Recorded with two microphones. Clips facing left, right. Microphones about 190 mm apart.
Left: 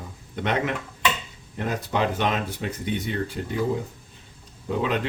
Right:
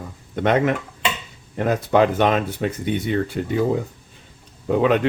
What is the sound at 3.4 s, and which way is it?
Speech, 85° right.